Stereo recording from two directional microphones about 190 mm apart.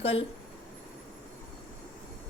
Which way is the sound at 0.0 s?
30° left (ahead or behind).